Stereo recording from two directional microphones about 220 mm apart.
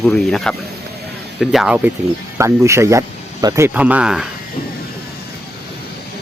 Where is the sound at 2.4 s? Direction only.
15° right (ahead or behind).